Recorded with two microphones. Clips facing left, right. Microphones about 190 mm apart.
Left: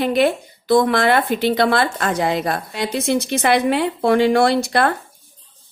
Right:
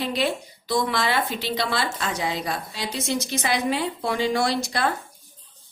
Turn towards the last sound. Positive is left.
turn(degrees=60)  # may be behind; listen again after turning